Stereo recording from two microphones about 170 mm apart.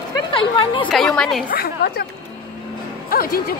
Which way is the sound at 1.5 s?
65° left (ahead or behind).